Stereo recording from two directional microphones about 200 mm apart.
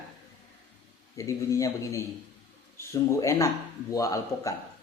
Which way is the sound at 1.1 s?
15° left (ahead or behind).